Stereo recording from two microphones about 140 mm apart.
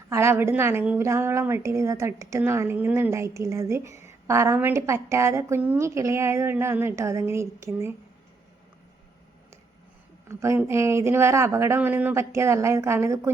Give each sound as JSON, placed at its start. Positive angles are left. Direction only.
{"t": 0.1, "sound": "a woman's voice", "side_deg": -20}
{"t": 10.2, "sound": "a woman's voice", "side_deg": -20}